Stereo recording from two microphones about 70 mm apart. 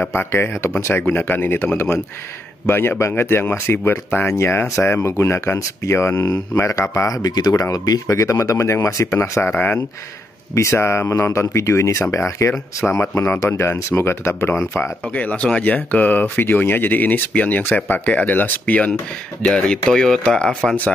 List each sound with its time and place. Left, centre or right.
0.0 s speech: left
1.0 s speech: left
7.2 s speech: left
8.1 s speech: left
10.5 s speech: left
15.1 s speech: centre
19.4 s speech: centre